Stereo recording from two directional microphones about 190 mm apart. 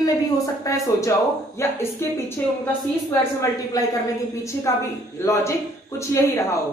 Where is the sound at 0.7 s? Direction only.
15° left (ahead or behind).